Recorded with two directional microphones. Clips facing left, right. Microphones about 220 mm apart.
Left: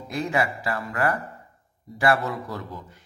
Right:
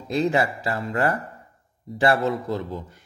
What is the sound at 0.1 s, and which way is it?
Speech, 25° right (ahead or behind).